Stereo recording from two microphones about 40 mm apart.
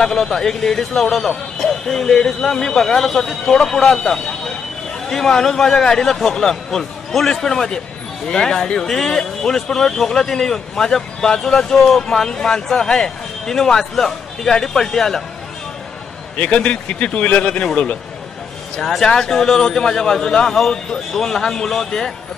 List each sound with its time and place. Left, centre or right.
0.0 s speech: centre
16.3 s a man's voice: left
18.8 s speech: centre